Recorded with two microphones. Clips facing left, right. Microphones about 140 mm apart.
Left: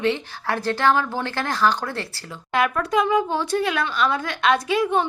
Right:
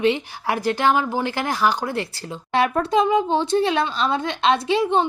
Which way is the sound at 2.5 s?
30° right (ahead or behind).